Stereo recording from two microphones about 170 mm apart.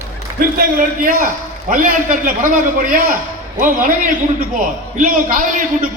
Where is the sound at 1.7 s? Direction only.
50° right (ahead or behind).